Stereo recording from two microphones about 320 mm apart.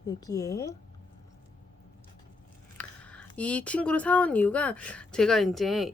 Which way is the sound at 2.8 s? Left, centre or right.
Centre.